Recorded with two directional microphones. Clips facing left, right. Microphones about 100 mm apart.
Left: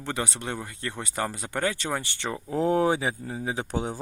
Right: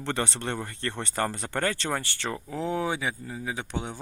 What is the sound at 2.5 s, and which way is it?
Speech, 40° left (ahead or behind).